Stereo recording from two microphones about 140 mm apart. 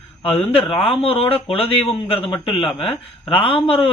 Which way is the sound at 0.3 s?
40° left (ahead or behind).